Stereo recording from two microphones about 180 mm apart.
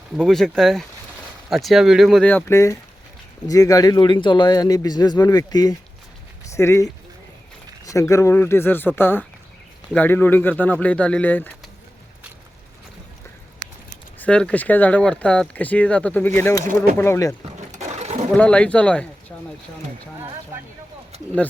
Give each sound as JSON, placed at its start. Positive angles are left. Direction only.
{"t": 0.2, "sound": "a man's voice", "side_deg": 0}
{"t": 14.2, "sound": "speech", "side_deg": 5}
{"t": 17.7, "sound": "pigeon", "side_deg": -40}
{"t": 18.3, "sound": "speech", "side_deg": 5}